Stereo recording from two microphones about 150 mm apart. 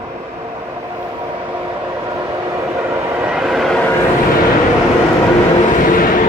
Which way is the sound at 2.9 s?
10° right (ahead or behind).